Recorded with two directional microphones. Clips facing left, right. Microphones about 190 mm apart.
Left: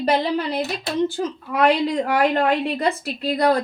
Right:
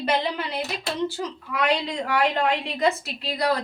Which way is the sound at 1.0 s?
50° left (ahead or behind).